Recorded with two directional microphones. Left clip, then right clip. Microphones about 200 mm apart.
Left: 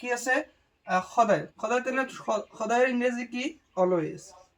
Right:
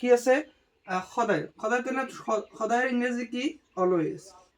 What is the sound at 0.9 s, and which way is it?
Speech, centre (ahead or behind).